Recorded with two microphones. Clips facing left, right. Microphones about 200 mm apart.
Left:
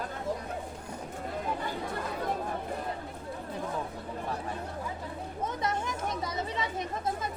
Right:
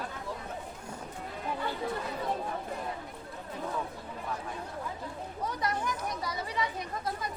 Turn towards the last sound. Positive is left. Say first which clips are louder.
# left 1 dB
turn(degrees=25)  # may be behind; listen again after turning